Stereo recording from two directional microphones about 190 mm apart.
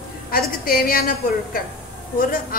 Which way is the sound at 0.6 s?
50° left (ahead or behind).